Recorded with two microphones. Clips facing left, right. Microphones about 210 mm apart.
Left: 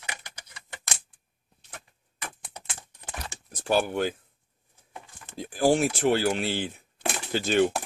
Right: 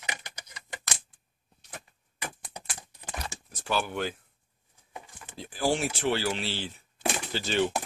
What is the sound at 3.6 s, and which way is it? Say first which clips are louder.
Speech: left 5 dB; 45° left (ahead or behind).